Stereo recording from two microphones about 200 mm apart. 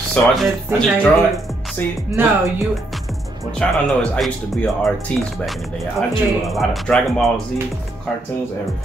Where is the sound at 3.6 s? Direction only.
5° left (ahead or behind).